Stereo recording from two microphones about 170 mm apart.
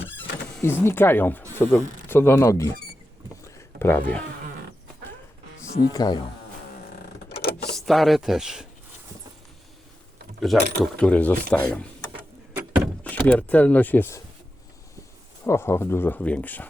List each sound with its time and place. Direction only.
0.2 s speech: 10° left (ahead or behind)
3.8 s speech: 10° left (ahead or behind)
5.9 s speech: 25° left (ahead or behind)
7.3 s a sound: 70° left (ahead or behind)
7.8 s speech: centre (ahead or behind)
10.5 s speech: centre (ahead or behind)
12.5 s door: 10° right (ahead or behind)
13.1 s speech: 10° left (ahead or behind)
15.4 s speech: 15° left (ahead or behind)